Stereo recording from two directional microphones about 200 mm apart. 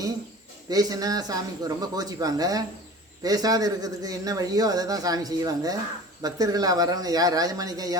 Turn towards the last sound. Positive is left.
turn(degrees=-20)  # may be behind; listen again after turning